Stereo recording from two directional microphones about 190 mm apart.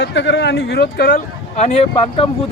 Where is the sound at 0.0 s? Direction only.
70° left (ahead or behind).